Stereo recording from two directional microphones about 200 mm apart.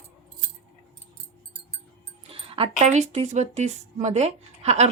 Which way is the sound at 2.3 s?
30° right (ahead or behind).